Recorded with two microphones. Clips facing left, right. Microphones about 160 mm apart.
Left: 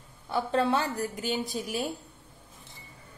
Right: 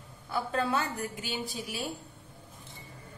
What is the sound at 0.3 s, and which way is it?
A woman's voice, 30° left (ahead or behind).